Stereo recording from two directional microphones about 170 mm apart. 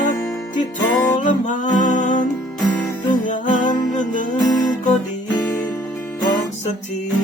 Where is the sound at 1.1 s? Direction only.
45° left (ahead or behind).